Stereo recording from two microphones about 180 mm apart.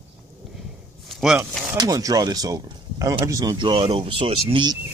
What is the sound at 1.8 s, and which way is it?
Speech, 20° right (ahead or behind).